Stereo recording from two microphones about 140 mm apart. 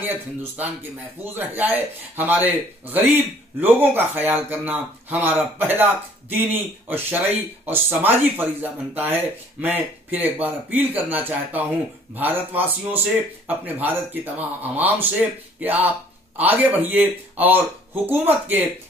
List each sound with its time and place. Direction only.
0.0 s speech: 15° right (ahead or behind)